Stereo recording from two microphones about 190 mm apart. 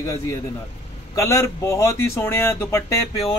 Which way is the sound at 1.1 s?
15° left (ahead or behind).